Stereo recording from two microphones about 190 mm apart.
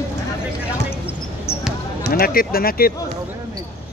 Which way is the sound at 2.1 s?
50° left (ahead or behind).